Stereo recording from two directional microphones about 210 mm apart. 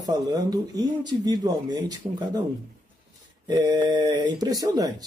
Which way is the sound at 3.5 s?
20° right (ahead or behind).